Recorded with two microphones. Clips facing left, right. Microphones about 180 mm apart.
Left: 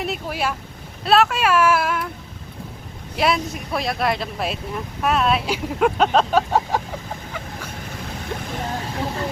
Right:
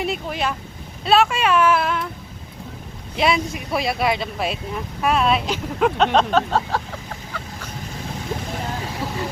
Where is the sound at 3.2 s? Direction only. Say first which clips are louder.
Right 1 dB; centre (ahead or behind).